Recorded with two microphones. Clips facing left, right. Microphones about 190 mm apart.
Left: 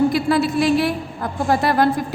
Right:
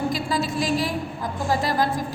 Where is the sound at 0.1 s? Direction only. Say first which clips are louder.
Left 7 dB; 60° left (ahead or behind).